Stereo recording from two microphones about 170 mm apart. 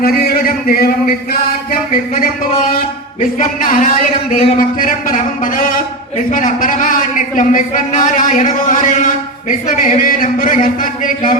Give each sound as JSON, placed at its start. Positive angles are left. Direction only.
{"t": 0.0, "sound": "a man's voice", "side_deg": 60}
{"t": 1.3, "sound": "music", "side_deg": 55}
{"t": 3.3, "sound": "a man's voice", "side_deg": 50}